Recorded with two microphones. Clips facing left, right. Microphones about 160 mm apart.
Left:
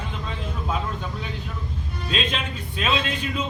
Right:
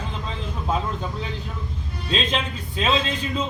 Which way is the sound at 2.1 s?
30° right (ahead or behind).